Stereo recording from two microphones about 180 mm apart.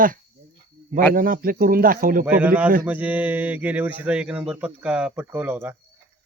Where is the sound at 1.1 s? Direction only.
50° right (ahead or behind).